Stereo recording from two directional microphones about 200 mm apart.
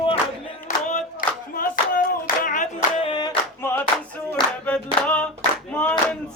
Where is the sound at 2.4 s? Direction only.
40° left (ahead or behind).